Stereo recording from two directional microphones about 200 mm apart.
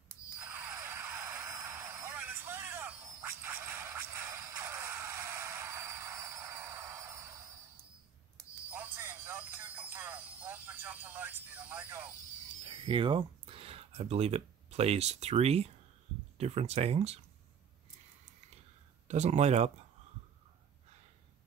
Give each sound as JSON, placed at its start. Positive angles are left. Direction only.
{"t": 0.4, "sound": "vehicle", "side_deg": -10}
{"t": 8.6, "sound": "music", "side_deg": -10}
{"t": 9.9, "sound": "a sound", "side_deg": -10}
{"t": 12.6, "sound": "speech", "side_deg": -25}
{"t": 19.0, "sound": "speech", "side_deg": -35}